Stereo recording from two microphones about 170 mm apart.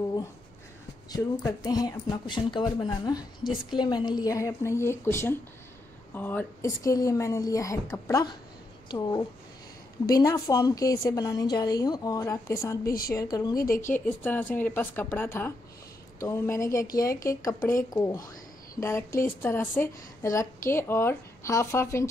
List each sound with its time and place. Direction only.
1.1 s speech: 20° left (ahead or behind)
12.8 s a woman's voice: 60° left (ahead or behind)
13.1 s speech: 20° left (ahead or behind)
13.7 s speech: 50° left (ahead or behind)
14.0 s a woman's voice: 10° left (ahead or behind)